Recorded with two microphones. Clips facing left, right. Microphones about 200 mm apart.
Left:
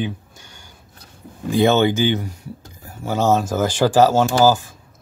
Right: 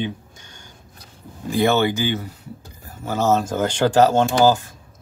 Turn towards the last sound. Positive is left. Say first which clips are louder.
# left 1 dB
turn(degrees=10)  # may be behind; listen again after turning